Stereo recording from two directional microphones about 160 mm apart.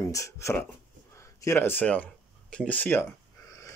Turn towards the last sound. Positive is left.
turn(degrees=10)  # may be behind; listen again after turning